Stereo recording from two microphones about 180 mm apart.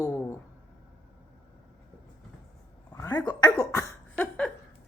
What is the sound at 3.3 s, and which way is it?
Cough, 20° left (ahead or behind).